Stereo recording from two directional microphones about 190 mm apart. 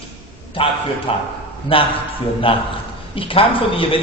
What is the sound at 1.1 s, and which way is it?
A man's voice, 30° left (ahead or behind).